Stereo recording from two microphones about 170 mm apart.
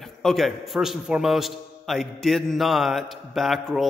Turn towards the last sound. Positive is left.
turn(degrees=0)  # may be behind; listen again after turning